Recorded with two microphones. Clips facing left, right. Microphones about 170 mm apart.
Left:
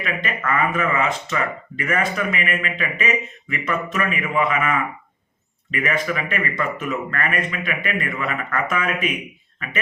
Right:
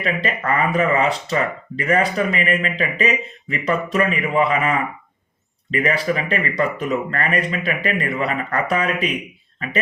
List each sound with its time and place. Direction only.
0.0 s speech: 35° right (ahead or behind)